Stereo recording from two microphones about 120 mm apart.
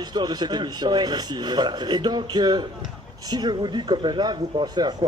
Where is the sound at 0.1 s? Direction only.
35° right (ahead or behind).